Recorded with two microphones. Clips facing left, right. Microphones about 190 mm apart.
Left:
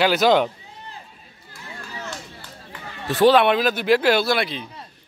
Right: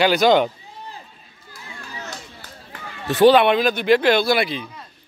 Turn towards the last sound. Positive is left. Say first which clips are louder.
# right 2 dB
turn(degrees=0)  # may be behind; listen again after turning